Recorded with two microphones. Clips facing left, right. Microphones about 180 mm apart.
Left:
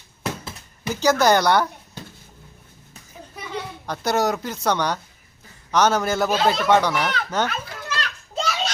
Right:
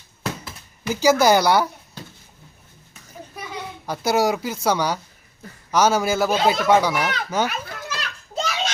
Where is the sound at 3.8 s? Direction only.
10° right (ahead or behind).